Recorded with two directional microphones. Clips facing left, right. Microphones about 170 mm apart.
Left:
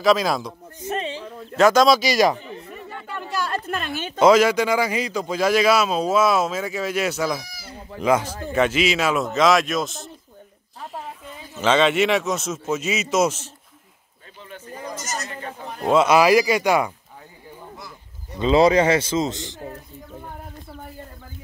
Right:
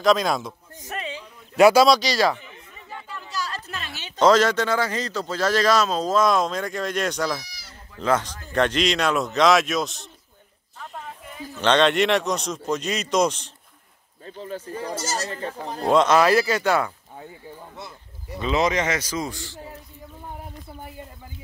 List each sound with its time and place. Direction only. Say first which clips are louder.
0.0 s a man's voice: left 1 dB; centre (ahead or behind)
0.8 s a sound: left 6 dB; 30° left (ahead or behind)
1.6 s speech: right 1 dB; 10° right (ahead or behind)
1.9 s a man's voice: left 2 dB; 10° left (ahead or behind)
2.3 s a sound: left 7 dB; 35° left (ahead or behind)
2.7 s a sound: left 1 dB; 60° left (ahead or behind)
4.2 s a man's voice: left 2 dB; 10° left (ahead or behind)
7.4 s chicken: left 8 dB; 50° left (ahead or behind)
8.0 s a man's voice: left 3 dB; 10° left (ahead or behind)
11.5 s a man's voice: left 1 dB; 5° left (ahead or behind)
14.2 s a sound: right 8 dB; 35° right (ahead or behind)
14.8 s speech: right 1 dB; 30° right (ahead or behind)
15.9 s a man's voice: left 2 dB; 10° left (ahead or behind)
18.4 s a man's voice: left 7 dB; 30° left (ahead or behind)